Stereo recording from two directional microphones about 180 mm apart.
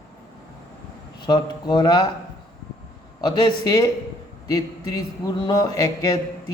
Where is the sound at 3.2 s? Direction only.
25° left (ahead or behind).